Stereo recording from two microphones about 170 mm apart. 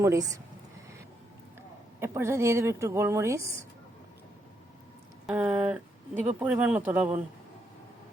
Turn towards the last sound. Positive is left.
turn(degrees=-10)  # may be behind; listen again after turning